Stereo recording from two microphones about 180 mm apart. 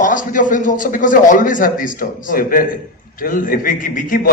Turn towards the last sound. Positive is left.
turn(degrees=50)  # may be behind; listen again after turning